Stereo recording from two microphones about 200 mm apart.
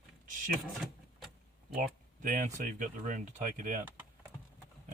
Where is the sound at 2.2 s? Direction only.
40° right (ahead or behind).